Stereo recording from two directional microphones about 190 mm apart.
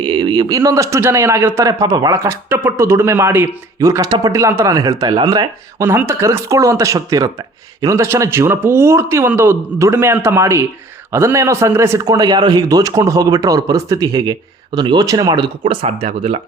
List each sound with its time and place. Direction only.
0.0 s a man's voice: 25° right (ahead or behind)